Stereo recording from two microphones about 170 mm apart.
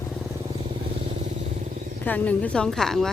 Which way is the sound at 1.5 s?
45° right (ahead or behind).